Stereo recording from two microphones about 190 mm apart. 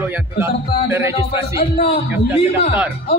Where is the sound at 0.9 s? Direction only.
10° right (ahead or behind).